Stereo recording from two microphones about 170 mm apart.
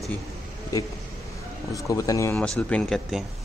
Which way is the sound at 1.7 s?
20° left (ahead or behind).